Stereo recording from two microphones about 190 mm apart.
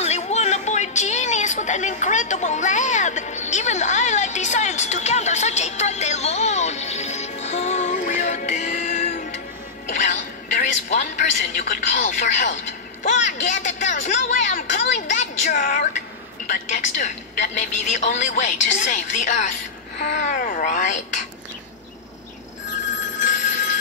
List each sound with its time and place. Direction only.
0.0 s music: 35° left (ahead or behind)
9.8 s a woman's voice: 40° left (ahead or behind)